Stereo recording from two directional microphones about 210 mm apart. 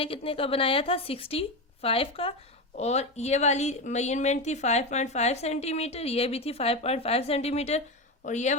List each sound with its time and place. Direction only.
0.0 s a woman's voice: 25° left (ahead or behind)